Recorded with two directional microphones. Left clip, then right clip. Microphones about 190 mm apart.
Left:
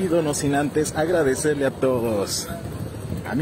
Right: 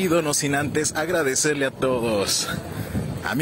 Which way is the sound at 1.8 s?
5° right (ahead or behind).